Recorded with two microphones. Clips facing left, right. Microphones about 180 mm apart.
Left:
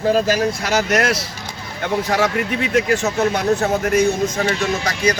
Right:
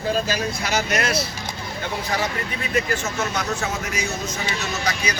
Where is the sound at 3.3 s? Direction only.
55° left (ahead or behind).